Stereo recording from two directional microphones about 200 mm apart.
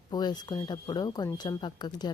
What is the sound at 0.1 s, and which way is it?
Speech, 20° left (ahead or behind).